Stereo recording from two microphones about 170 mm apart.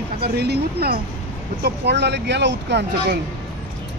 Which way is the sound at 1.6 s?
85° right.